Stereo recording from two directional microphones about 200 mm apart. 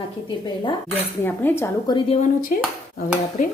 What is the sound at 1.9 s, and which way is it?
Speech, 30° left (ahead or behind).